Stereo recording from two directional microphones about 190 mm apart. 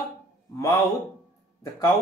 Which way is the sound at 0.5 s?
15° left (ahead or behind).